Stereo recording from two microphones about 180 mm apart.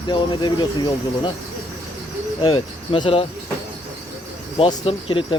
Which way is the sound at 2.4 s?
25° left (ahead or behind).